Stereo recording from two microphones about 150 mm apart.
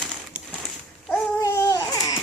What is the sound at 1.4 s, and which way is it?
Babbling, 20° left (ahead or behind).